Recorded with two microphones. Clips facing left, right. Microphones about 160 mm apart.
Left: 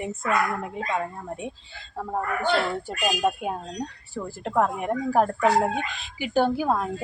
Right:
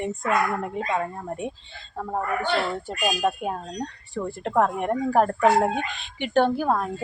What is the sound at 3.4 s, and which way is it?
A woman's voice, 5° left (ahead or behind).